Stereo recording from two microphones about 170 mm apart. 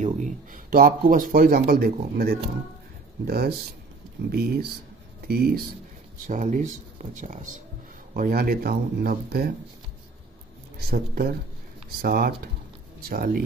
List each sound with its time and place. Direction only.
0.0 s speech: 50° right (ahead or behind); by 5.7 s 65° right (ahead or behind)
6.2 s speech: 50° right (ahead or behind)
8.2 s speech: 60° right (ahead or behind)
10.8 s speech: 65° right (ahead or behind)